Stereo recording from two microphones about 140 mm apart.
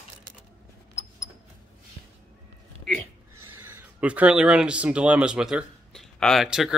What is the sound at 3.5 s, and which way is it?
Speech, 15° right (ahead or behind).